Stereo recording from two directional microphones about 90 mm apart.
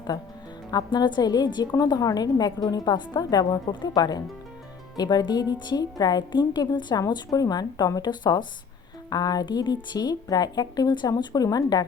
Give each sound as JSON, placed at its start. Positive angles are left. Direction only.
{"t": 0.1, "sound": "a woman's voice", "side_deg": 40}
{"t": 1.7, "sound": "a woman's voice", "side_deg": 45}
{"t": 7.1, "sound": "a woman's voice", "side_deg": 45}